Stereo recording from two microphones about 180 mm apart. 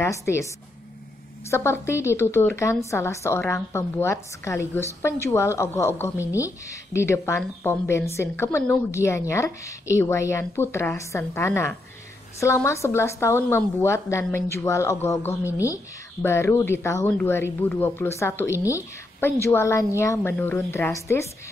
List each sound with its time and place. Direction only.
0.0 s a woman's voice: 15° left (ahead or behind)
1.5 s a woman's voice: 15° left (ahead or behind)